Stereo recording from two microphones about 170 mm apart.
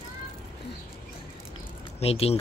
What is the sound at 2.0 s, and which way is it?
Speech, 35° left (ahead or behind).